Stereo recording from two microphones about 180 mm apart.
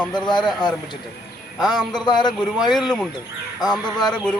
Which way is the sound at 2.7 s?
Centre (ahead or behind).